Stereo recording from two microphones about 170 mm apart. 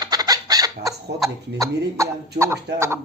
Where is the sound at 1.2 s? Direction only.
20° right (ahead or behind).